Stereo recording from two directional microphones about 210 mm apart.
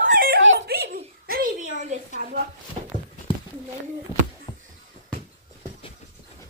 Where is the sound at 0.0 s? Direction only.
40° right (ahead or behind).